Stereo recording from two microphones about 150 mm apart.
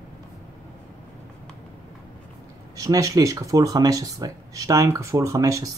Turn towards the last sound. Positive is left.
turn(degrees=-20)  # may be behind; listen again after turning